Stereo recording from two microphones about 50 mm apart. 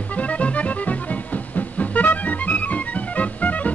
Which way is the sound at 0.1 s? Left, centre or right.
Left.